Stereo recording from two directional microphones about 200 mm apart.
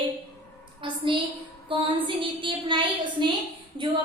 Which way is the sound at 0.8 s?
25° right (ahead or behind).